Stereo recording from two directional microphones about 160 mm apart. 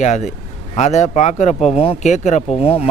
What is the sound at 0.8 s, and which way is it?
Speech, 45° left (ahead or behind).